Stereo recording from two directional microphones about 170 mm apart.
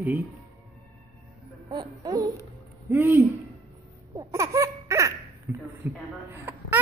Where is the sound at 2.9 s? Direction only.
10° right (ahead or behind).